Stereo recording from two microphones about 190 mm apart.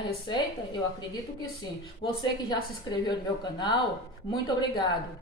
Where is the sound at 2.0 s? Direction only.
20° left (ahead or behind).